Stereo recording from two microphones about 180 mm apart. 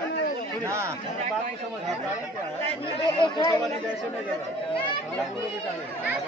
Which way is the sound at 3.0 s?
25° left (ahead or behind).